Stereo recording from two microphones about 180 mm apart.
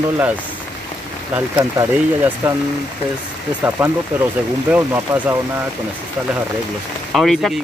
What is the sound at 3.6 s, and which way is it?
Speech, 10° right (ahead or behind).